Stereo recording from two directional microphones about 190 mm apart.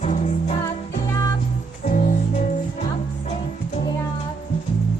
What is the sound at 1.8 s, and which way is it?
Music, 40° left (ahead or behind).